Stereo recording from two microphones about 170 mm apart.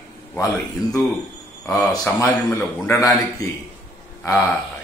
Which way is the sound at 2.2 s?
15° left (ahead or behind).